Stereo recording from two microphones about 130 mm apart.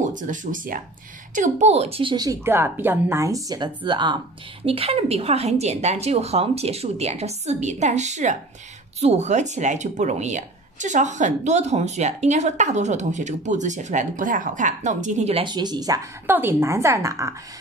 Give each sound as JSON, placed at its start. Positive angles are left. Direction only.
{"t": 0.0, "sound": "speech", "side_deg": -80}
{"t": 1.3, "sound": "a woman's voice", "side_deg": -70}
{"t": 2.4, "sound": "a woman's voice", "side_deg": -15}
{"t": 4.6, "sound": "a woman's voice", "side_deg": -45}
{"t": 15.4, "sound": "speech", "side_deg": -35}
{"t": 16.3, "sound": "a woman's voice", "side_deg": -15}